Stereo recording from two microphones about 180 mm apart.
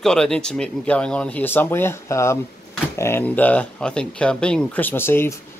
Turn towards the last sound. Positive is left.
turn(degrees=15)  # may be behind; listen again after turning